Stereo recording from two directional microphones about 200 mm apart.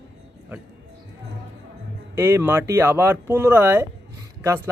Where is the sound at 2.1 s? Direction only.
10° right (ahead or behind).